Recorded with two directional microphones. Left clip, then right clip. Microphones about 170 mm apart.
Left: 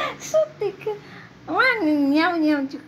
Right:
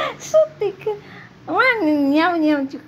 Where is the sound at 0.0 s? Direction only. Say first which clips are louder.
Right 5 dB; 5° right (ahead or behind).